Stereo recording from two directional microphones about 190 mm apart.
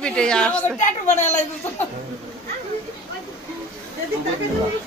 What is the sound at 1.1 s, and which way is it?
Speech, 40° left (ahead or behind).